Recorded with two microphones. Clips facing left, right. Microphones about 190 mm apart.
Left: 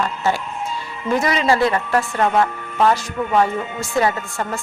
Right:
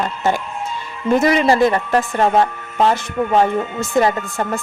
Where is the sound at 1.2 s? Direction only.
50° right (ahead or behind).